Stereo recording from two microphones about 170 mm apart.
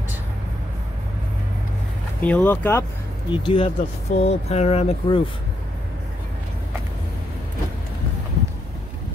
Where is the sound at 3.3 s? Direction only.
30° left (ahead or behind).